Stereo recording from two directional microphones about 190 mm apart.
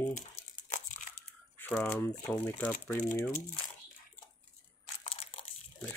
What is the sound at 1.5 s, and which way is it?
Speech, 10° left (ahead or behind).